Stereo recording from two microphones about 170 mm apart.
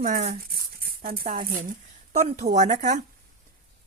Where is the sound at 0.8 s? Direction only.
60° right (ahead or behind).